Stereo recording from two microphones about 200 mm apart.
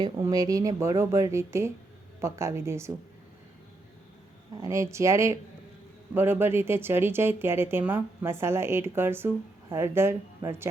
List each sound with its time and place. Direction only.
0.0 s speech: 20° right (ahead or behind)
4.6 s speech: 15° right (ahead or behind)